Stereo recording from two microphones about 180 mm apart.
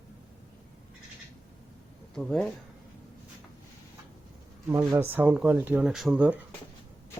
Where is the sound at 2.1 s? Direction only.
5° left (ahead or behind).